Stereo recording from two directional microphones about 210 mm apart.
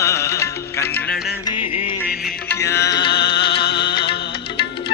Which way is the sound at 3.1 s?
55° left (ahead or behind).